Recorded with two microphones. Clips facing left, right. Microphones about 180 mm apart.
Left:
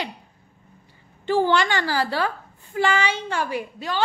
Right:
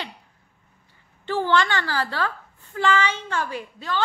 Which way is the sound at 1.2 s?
15° left (ahead or behind).